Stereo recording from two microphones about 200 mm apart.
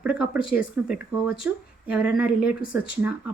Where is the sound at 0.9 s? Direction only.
5° right (ahead or behind).